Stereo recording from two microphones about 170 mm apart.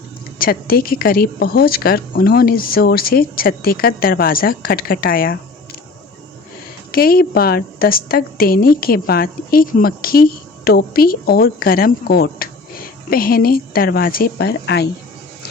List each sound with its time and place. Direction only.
0.3 s a woman's voice: 60° left (ahead or behind)
6.9 s a woman's voice: 60° left (ahead or behind)